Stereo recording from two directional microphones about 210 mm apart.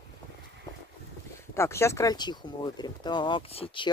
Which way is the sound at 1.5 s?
10° left (ahead or behind).